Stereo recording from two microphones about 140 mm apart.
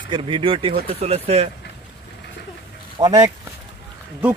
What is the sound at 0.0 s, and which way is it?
Speech, 35° right (ahead or behind).